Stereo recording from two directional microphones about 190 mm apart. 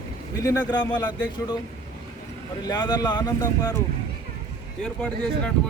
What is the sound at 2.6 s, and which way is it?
Speech, 20° left (ahead or behind).